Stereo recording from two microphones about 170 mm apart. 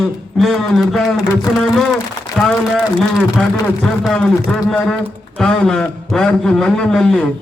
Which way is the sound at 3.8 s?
5° left (ahead or behind).